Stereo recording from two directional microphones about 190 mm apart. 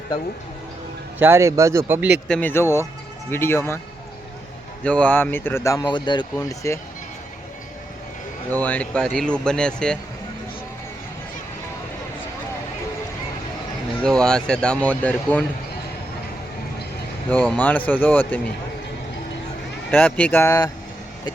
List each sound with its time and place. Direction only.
1.2 s a man's voice: 15° right (ahead or behind)
2.2 s speech: 5° left (ahead or behind)
4.8 s speech: 5° left (ahead or behind)
8.6 s speech: 5° left (ahead or behind)
14.0 s speech: 5° left (ahead or behind)
17.2 s speech: 10° left (ahead or behind)
19.9 s speech: 5° left (ahead or behind)